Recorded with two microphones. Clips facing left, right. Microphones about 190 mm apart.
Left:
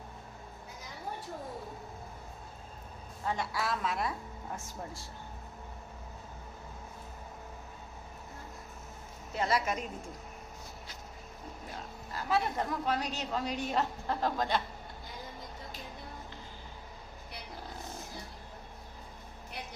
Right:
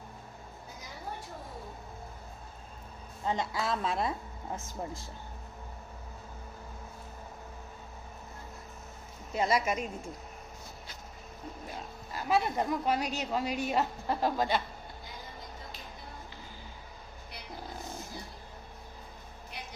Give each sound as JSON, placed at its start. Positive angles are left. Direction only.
{"t": 3.2, "sound": "a woman's voice", "side_deg": -20}
{"t": 9.3, "sound": "a woman's voice", "side_deg": -15}
{"t": 12.1, "sound": "a woman's voice", "side_deg": -15}